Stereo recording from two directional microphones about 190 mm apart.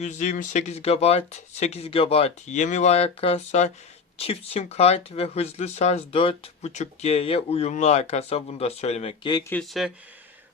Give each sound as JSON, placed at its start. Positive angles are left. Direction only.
{"t": 0.0, "sound": "speech", "side_deg": 40}
{"t": 9.5, "sound": "speech", "side_deg": 0}